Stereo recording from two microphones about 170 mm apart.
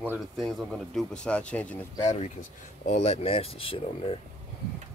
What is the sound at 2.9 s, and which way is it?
Speech, 35° left (ahead or behind).